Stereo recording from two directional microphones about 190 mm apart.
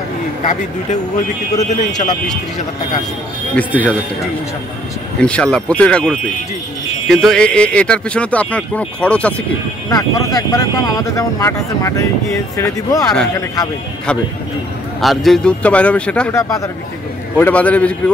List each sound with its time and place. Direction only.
0.5 s a man's voice: 40° left (ahead or behind)
3.5 s speech: 10° left (ahead or behind)
5.2 s speech: 5° left (ahead or behind)
9.8 s speech: 15° left (ahead or behind)
15.0 s speech: centre (ahead or behind)